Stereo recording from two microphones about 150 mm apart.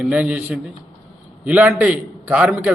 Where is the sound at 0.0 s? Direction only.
10° right (ahead or behind).